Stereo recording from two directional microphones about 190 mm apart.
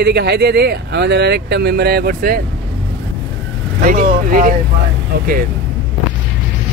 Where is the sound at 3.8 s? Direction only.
50° right (ahead or behind).